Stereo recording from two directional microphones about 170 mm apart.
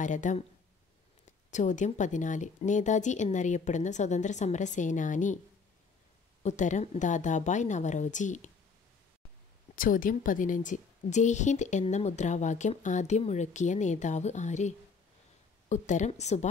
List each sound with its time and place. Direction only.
0.0 s a woman's voice: 45° left (ahead or behind)
1.5 s a woman's voice: 45° left (ahead or behind)
6.4 s a woman's voice: 45° left (ahead or behind)
9.8 s a woman's voice: 55° left (ahead or behind)
15.7 s a woman's voice: 45° left (ahead or behind)